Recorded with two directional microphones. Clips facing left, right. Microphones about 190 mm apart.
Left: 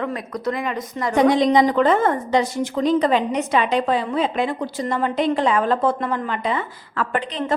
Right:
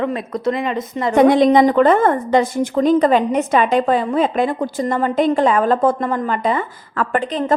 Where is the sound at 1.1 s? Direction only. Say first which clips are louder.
Right 4 dB; 55° right (ahead or behind).